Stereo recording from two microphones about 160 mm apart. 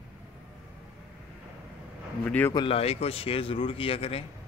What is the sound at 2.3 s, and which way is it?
Speech, 10° left (ahead or behind).